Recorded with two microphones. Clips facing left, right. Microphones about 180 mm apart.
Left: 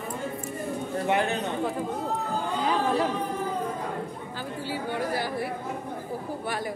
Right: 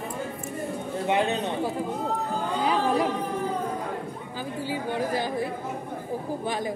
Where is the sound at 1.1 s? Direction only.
20° right (ahead or behind).